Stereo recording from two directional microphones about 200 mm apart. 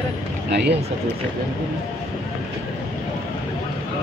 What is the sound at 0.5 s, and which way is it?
Speech, 55° right (ahead or behind).